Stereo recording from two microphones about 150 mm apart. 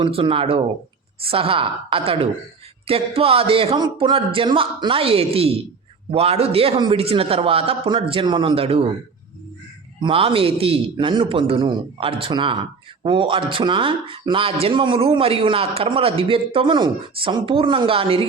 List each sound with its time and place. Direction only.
0.0 s a man's voice: 35° right (ahead or behind)
10.0 s a man's voice: 35° right (ahead or behind)